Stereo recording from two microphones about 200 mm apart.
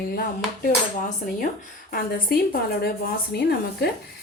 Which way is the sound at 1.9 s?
50° left (ahead or behind).